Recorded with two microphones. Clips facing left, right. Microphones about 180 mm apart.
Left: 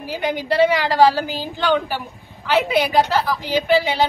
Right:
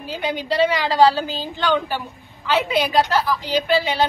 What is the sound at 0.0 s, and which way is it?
A woman's voice, 15° left (ahead or behind).